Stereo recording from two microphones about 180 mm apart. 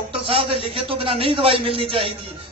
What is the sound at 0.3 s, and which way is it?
Speech, 30° right (ahead or behind).